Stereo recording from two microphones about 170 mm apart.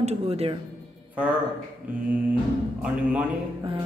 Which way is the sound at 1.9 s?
10° right (ahead or behind).